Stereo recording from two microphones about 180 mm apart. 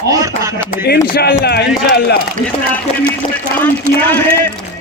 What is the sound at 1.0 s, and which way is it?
Speech, 60° left (ahead or behind).